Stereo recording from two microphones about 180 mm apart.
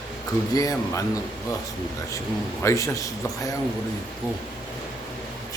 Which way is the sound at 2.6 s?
15° left (ahead or behind).